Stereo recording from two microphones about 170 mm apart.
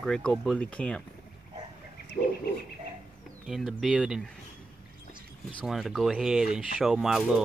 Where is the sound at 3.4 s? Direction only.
Centre (ahead or behind).